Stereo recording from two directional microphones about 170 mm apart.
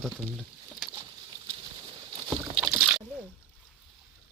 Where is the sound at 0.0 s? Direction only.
5° left (ahead or behind).